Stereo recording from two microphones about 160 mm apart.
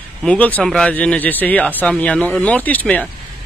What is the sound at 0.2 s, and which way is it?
Speech, 10° left (ahead or behind).